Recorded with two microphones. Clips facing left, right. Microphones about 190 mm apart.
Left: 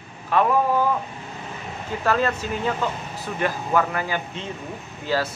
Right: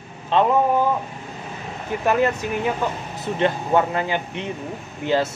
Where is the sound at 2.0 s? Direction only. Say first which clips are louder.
Right 3 dB; 20° right (ahead or behind).